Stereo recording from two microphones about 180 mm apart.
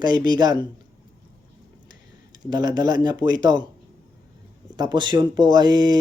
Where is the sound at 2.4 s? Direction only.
25° right (ahead or behind).